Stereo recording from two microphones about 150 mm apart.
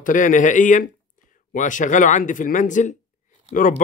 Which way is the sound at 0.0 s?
60° left (ahead or behind).